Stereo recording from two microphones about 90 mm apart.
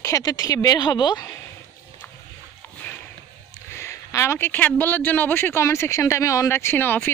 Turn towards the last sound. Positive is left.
turn(degrees=20)  # may be behind; listen again after turning